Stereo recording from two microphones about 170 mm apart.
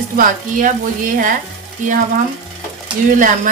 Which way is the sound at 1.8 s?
45° right (ahead or behind).